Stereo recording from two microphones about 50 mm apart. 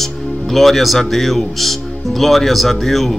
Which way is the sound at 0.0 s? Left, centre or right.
Centre.